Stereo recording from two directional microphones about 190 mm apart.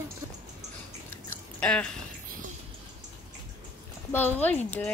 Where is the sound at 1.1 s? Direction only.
5° left (ahead or behind).